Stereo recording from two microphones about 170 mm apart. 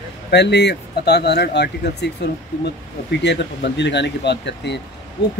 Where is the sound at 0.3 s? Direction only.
80° left.